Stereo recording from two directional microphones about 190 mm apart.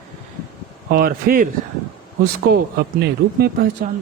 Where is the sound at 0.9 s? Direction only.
50° right (ahead or behind).